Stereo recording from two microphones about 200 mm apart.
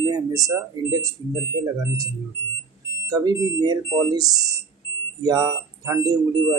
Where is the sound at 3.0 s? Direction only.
20° right (ahead or behind).